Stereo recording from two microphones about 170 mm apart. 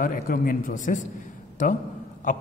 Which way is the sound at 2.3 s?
50° left (ahead or behind).